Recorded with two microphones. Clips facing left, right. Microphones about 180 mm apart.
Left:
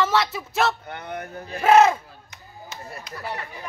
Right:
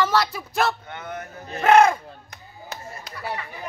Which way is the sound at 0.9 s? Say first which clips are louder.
Left 1 dB; 35° left (ahead or behind).